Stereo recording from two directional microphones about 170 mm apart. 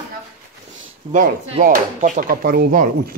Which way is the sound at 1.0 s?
40° right (ahead or behind).